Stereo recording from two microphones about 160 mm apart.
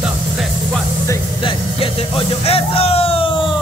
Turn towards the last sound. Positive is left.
turn(degrees=35)  # may be behind; listen again after turning